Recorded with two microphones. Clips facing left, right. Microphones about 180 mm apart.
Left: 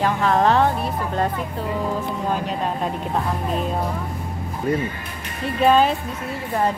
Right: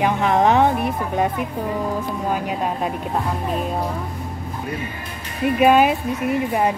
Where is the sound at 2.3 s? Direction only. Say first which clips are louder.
Right 1 dB; 10° right (ahead or behind).